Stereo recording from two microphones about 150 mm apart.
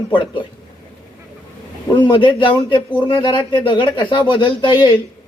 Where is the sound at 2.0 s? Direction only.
30° left (ahead or behind).